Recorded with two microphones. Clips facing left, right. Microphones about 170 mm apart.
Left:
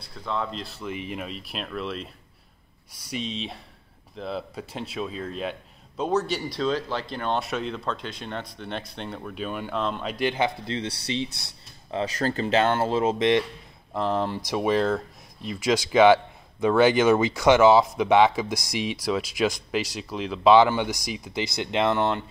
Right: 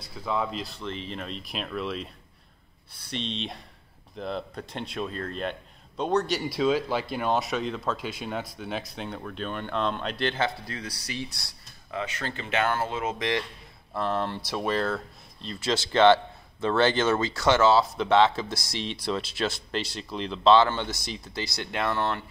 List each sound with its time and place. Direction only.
0.0 s speech: 5° right (ahead or behind)
2.9 s speech: 10° left (ahead or behind)
12.0 s speech: 40° left (ahead or behind)
13.9 s speech: 15° left (ahead or behind)